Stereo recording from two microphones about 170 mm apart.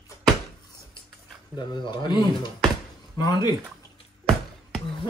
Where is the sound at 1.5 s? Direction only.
25° left (ahead or behind).